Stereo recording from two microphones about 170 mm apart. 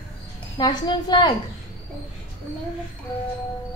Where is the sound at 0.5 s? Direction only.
25° left (ahead or behind).